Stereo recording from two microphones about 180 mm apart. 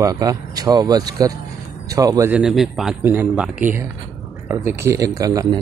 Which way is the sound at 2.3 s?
5° right (ahead or behind).